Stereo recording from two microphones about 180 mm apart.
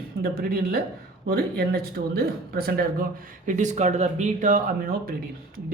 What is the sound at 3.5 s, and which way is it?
Speech, 45° right (ahead or behind).